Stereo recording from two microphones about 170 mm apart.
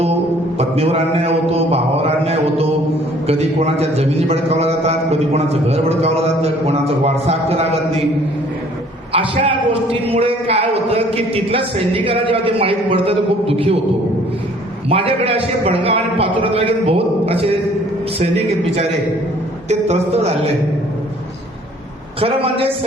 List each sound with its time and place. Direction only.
0.6 s a man's voice: 35° right (ahead or behind)
9.1 s a man's voice: 30° right (ahead or behind)
14.8 s a man's voice: 35° right (ahead or behind)
22.2 s a man's voice: 35° right (ahead or behind)